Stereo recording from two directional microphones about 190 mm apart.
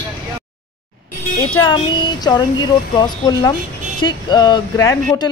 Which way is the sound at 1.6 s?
25° left (ahead or behind).